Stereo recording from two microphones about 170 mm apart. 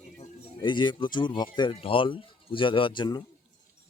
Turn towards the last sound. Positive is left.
turn(degrees=25)  # may be behind; listen again after turning